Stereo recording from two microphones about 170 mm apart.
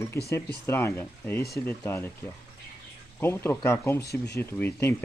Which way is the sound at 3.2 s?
15° left (ahead or behind).